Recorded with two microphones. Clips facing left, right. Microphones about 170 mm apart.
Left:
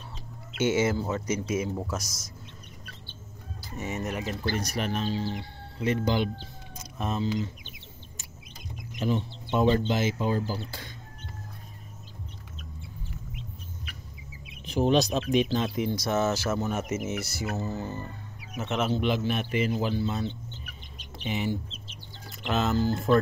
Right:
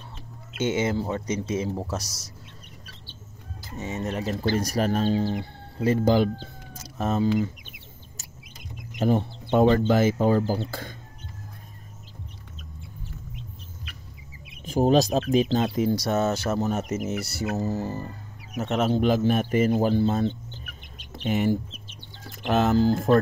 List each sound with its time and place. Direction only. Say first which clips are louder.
0.8 s speech: right 1 dB; 30° right (ahead or behind)
3.7 s speech: right 2 dB; 25° right (ahead or behind); by 7.4 s 45° right (ahead or behind)
9.0 s speech: right 5 dB; 55° right (ahead or behind)
14.6 s speech: right 3 dB; 40° right (ahead or behind)
21.3 s speech: right 6 dB; 50° right (ahead or behind)